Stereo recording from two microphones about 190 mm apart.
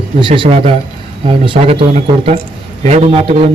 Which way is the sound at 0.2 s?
25° right (ahead or behind).